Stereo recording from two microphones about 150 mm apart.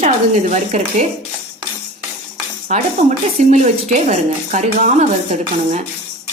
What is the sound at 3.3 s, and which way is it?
A woman's voice, 50° right (ahead or behind).